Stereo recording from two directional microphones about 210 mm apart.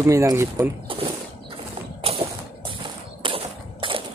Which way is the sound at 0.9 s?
25° right (ahead or behind).